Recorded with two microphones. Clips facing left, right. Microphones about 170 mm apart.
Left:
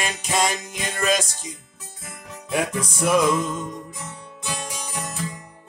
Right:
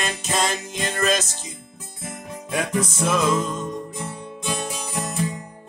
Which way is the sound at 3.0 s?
10° left (ahead or behind).